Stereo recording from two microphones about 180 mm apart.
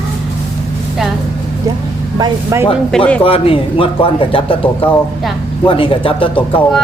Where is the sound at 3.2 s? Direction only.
30° left (ahead or behind).